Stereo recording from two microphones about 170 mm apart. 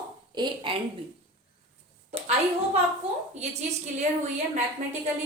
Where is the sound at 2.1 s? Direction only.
35° right (ahead or behind).